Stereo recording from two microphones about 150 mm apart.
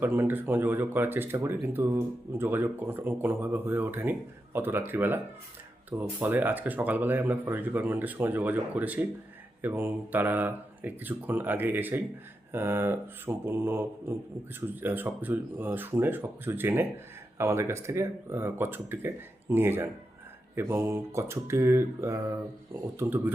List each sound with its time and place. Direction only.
0.0 s speech: 15° right (ahead or behind)